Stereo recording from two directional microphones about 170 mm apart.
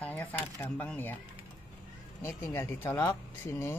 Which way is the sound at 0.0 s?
10° left (ahead or behind).